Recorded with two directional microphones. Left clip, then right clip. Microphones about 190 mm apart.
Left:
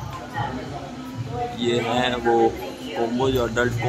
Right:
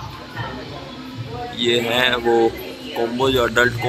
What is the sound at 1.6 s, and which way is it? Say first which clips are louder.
Speech: right 5 dB; centre (ahead or behind).